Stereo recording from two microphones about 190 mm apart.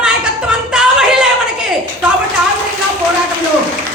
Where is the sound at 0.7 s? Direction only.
5° right (ahead or behind).